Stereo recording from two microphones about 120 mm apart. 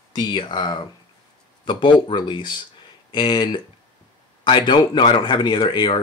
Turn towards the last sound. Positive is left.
turn(degrees=40)  # may be behind; listen again after turning